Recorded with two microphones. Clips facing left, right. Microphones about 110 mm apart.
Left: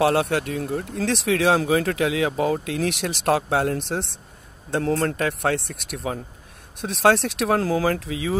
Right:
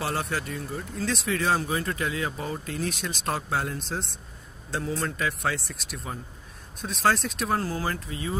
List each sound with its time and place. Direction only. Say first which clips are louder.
0.0 s speech: left 10 dB; 65° left (ahead or behind); by 8.4 s 90° left